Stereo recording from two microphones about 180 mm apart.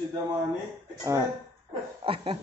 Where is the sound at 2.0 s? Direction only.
30° right (ahead or behind).